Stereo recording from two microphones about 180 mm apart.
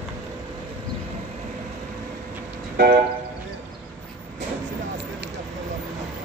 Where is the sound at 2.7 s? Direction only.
55° right (ahead or behind).